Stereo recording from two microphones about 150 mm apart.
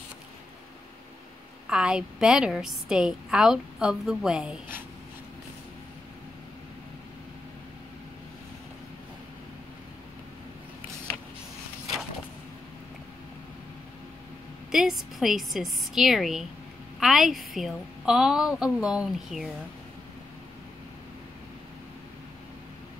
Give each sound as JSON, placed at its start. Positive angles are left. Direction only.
{"t": 1.7, "sound": "a woman's voice", "side_deg": -5}
{"t": 14.7, "sound": "a woman's voice", "side_deg": 0}